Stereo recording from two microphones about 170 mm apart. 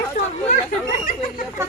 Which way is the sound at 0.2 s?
45° left (ahead or behind).